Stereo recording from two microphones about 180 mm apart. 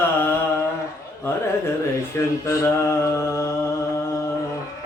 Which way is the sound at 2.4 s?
15° left (ahead or behind).